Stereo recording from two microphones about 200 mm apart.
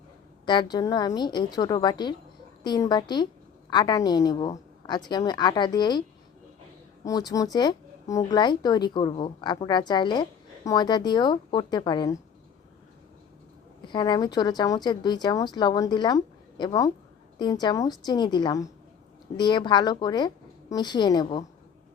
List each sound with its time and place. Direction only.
0.4 s speech: 20° left (ahead or behind)
7.0 s speech: 20° left (ahead or behind)
13.8 s speech: 20° left (ahead or behind)